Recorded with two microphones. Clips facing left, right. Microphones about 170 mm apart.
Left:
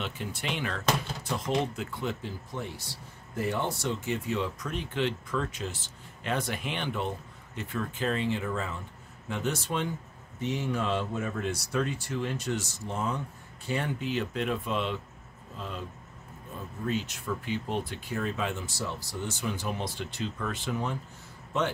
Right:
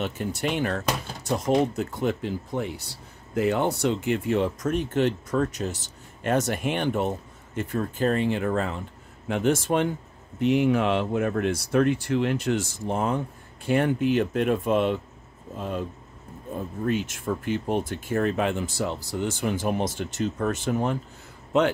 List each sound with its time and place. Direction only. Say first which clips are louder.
0.0 s speech: right 8 dB; 40° right (ahead or behind)
3.3 s speech: right 7 dB; 75° right (ahead or behind); by 9.9 s 55° right (ahead or behind)
10.4 s speech: right 10 dB; 65° right (ahead or behind)
19.2 s speech: right 7 dB; 55° right (ahead or behind)